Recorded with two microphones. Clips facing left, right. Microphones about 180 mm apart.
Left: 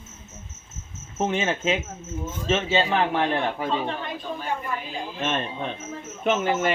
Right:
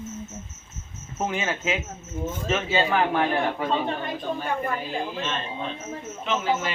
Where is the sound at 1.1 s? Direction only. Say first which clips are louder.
Left 3 dB; 25° left (ahead or behind).